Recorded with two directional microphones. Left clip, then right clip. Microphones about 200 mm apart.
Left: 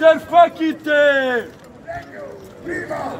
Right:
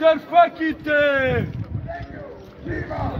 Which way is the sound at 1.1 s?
15° right (ahead or behind).